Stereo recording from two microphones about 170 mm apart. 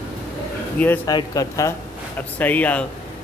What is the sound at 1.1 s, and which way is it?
Speech, 20° left (ahead or behind).